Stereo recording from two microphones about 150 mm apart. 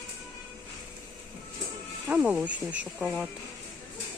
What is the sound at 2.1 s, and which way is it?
Speech, 10° right (ahead or behind).